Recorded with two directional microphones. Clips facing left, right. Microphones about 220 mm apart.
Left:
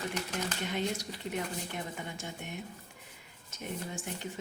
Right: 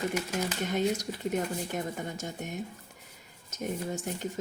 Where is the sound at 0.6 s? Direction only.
45° right (ahead or behind).